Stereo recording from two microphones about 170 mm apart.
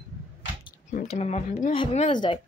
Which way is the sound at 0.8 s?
45° left (ahead or behind).